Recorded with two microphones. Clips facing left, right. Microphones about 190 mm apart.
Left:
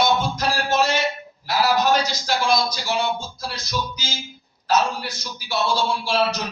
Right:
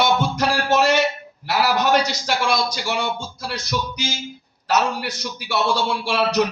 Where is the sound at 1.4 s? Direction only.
65° right (ahead or behind).